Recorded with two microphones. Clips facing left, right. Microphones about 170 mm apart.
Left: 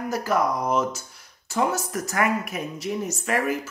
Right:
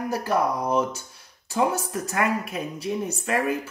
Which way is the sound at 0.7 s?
35° right (ahead or behind).